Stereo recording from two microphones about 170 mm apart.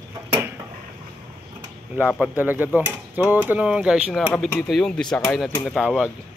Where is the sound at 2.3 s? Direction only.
10° right (ahead or behind).